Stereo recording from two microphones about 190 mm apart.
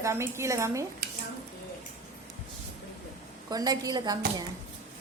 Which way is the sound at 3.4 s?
20° right (ahead or behind).